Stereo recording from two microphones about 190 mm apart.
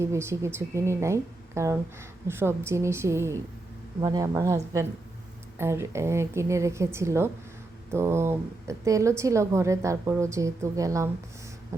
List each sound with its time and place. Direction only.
0.0 s a woman's voice: 15° right (ahead or behind)